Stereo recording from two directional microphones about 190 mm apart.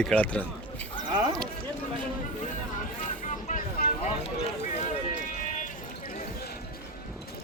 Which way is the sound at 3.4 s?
40° left (ahead or behind).